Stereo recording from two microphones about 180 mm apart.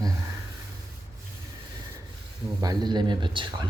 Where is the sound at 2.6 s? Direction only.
20° right (ahead or behind).